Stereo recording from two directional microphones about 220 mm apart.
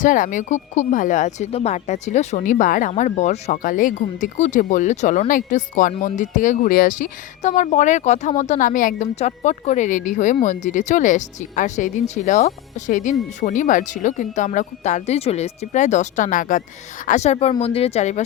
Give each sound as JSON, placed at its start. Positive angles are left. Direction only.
{"t": 0.0, "sound": "speech", "side_deg": 35}